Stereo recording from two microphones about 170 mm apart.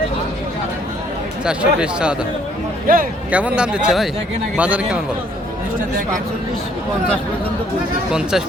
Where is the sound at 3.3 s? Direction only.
10° right (ahead or behind).